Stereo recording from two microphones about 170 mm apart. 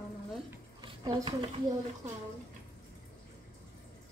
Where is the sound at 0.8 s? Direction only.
30° right (ahead or behind).